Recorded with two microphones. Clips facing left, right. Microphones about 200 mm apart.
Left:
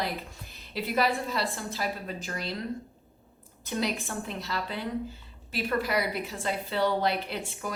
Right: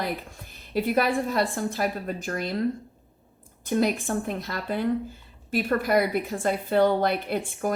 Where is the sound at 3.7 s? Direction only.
50° right (ahead or behind).